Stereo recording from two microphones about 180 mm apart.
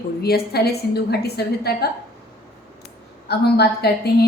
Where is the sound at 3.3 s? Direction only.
60° left (ahead or behind).